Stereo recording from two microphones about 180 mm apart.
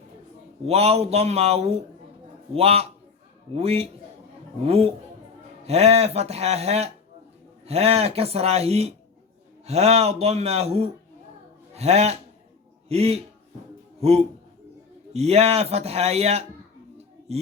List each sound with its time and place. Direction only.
0.6 s speech: 35° right (ahead or behind)